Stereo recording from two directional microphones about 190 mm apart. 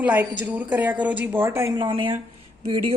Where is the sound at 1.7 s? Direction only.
25° right (ahead or behind).